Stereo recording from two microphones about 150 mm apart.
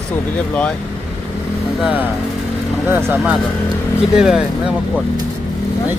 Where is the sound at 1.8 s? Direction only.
10° right (ahead or behind).